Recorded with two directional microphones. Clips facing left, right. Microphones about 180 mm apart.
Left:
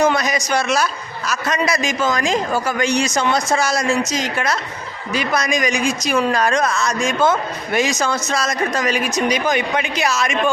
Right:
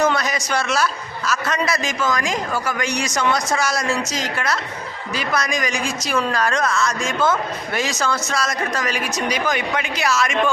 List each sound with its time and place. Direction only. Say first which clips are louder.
0.0 s a man's voice: left 3 dB; 15° left (ahead or behind)
2.0 s a woman's voice: left 3 dB; 25° left (ahead or behind)